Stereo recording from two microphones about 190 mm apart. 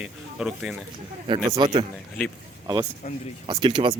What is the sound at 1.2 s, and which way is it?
Speech, 20° right (ahead or behind).